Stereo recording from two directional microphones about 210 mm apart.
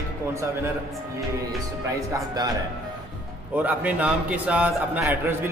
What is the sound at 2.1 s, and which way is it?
Speech, 20° right (ahead or behind).